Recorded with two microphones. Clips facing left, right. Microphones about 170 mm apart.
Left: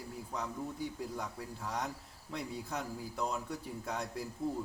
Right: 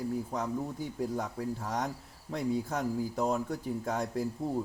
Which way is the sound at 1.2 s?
45° right (ahead or behind).